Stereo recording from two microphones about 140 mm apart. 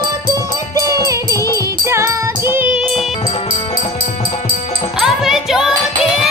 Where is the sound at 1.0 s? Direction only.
25° right (ahead or behind).